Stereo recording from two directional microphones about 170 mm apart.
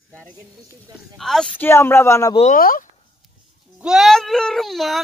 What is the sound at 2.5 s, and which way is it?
Speech, 55° left (ahead or behind).